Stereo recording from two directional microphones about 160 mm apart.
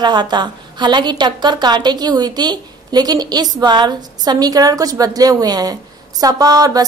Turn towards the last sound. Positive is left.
turn(degrees=-25)  # may be behind; listen again after turning